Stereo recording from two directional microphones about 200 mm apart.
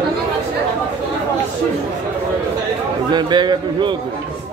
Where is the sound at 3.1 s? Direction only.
20° right (ahead or behind).